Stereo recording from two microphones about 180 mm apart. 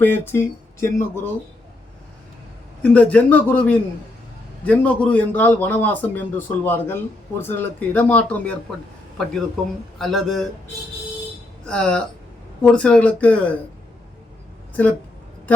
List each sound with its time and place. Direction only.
0.0 s a man's voice: 10° left (ahead or behind)
2.8 s a man's voice: 5° left (ahead or behind)
10.0 s speech: centre (ahead or behind)
11.6 s a man's voice: 5° left (ahead or behind)